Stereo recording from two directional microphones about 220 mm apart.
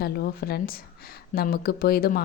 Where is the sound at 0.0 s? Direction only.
45° left (ahead or behind).